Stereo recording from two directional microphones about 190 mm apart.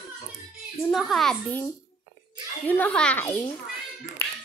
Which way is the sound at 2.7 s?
10° left (ahead or behind).